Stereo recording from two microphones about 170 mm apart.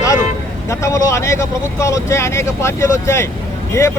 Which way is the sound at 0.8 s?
15° left (ahead or behind).